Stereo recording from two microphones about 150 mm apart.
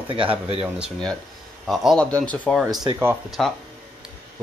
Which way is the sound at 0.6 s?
5° right (ahead or behind).